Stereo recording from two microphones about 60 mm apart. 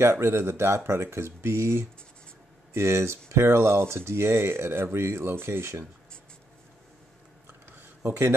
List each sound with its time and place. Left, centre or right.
0.0 s speech: right
8.0 s speech: right